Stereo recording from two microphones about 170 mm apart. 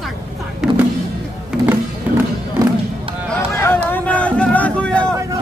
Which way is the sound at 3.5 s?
15° left (ahead or behind).